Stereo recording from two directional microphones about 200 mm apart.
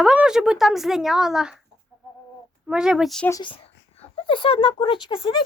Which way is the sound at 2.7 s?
5° right (ahead or behind).